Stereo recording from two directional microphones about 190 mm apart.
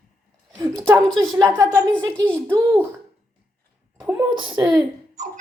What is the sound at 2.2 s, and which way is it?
Speech, 5° left (ahead or behind).